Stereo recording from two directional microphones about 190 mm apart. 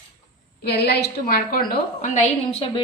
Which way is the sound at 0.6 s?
55° left (ahead or behind).